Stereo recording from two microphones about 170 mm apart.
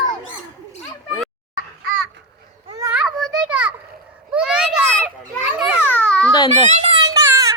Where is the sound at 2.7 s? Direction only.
20° right (ahead or behind).